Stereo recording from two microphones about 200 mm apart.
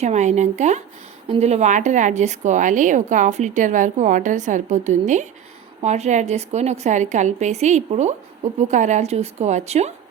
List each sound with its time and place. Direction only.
0.0 s speech: 35° right (ahead or behind)